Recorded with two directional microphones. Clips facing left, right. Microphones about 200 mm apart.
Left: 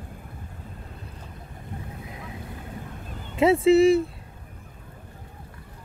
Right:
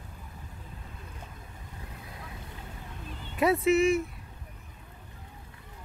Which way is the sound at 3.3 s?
25° left (ahead or behind).